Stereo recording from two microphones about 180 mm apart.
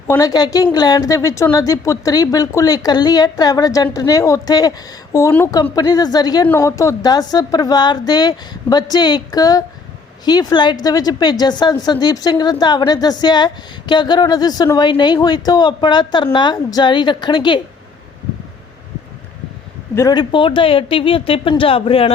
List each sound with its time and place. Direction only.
0.1 s a woman's voice: 20° left (ahead or behind)
20.0 s a woman's voice: 20° left (ahead or behind)